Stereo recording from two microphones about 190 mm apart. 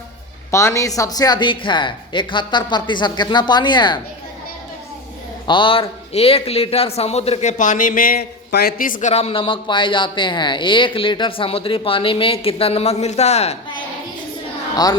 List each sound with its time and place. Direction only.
0.5 s speech: 15° left (ahead or behind)
5.5 s a man's voice: 25° left (ahead or behind)